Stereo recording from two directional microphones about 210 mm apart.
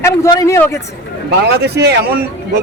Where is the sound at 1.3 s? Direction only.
50° right (ahead or behind).